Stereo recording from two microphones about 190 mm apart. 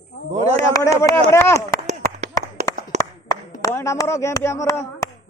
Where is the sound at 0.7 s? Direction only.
15° left (ahead or behind).